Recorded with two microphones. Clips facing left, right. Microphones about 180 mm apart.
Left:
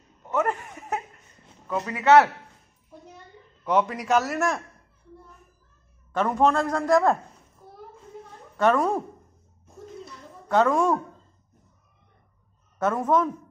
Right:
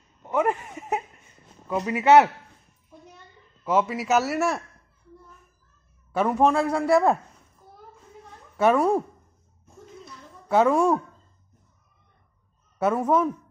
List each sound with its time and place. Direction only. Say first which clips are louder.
0.3 s a man's voice: right 2 dB; 15° right (ahead or behind)
3.6 s a man's voice: even; 5° right (ahead or behind)
6.1 s a man's voice: right 1 dB; 10° right (ahead or behind)
8.5 s a man's voice: right 2 dB; 10° right (ahead or behind)
10.5 s a man's voice: right 1 dB; 10° right (ahead or behind)
12.7 s a man's voice: right 1 dB; 10° right (ahead or behind)